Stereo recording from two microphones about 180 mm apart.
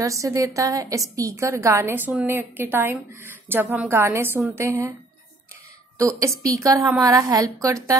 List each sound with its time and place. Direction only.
0.0 s a woman's voice: 15° right (ahead or behind)
5.9 s a woman's voice: 20° right (ahead or behind)